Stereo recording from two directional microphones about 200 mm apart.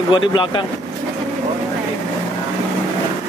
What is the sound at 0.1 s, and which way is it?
Speech, 25° left (ahead or behind).